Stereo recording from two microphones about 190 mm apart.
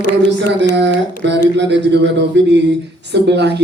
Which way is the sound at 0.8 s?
65° right (ahead or behind).